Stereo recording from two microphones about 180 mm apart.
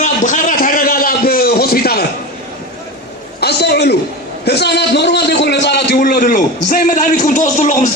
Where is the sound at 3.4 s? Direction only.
65° left (ahead or behind).